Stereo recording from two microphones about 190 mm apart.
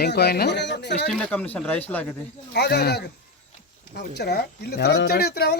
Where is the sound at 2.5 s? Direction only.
60° left (ahead or behind).